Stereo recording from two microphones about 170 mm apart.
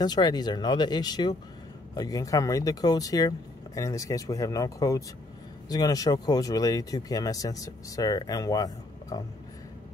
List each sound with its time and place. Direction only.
0.0 s speech: 25° left (ahead or behind)